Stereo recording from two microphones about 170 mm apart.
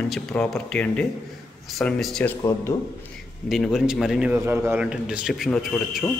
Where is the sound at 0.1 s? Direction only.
5° left (ahead or behind).